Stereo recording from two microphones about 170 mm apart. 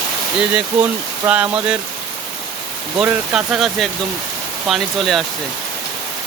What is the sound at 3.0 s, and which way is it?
Speech, 5° right (ahead or behind).